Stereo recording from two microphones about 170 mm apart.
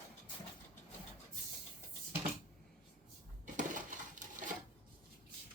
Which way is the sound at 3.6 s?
50° right (ahead or behind).